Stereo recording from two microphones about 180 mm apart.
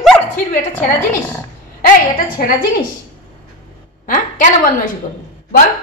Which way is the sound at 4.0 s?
45° left (ahead or behind).